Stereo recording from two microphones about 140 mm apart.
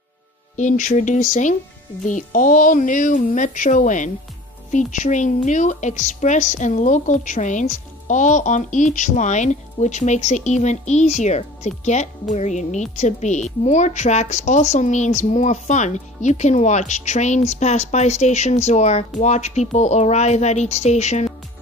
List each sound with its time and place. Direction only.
0.6 s a woman's voice: 60° left (ahead or behind)